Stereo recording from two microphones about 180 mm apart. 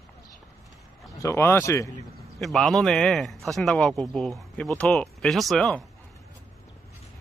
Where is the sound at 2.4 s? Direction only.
Centre (ahead or behind).